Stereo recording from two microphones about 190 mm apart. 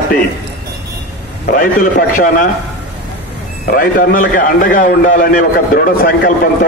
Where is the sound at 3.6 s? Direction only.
50° left (ahead or behind).